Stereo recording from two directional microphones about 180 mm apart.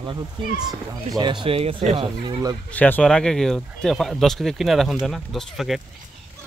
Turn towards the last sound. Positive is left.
turn(degrees=0)  # may be behind; listen again after turning